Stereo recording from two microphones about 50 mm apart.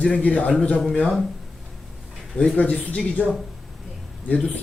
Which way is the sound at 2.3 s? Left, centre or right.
Left.